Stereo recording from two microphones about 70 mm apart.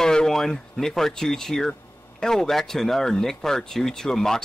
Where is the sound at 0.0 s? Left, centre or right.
Centre.